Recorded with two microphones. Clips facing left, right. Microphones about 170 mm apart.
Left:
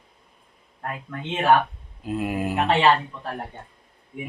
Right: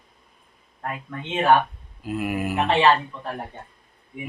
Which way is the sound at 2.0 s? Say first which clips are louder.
Even; 25° left (ahead or behind).